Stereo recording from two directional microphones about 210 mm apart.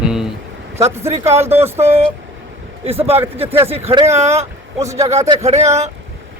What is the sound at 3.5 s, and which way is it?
Speech, 10° right (ahead or behind).